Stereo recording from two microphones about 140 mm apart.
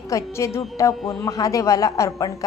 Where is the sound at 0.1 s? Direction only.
20° left (ahead or behind).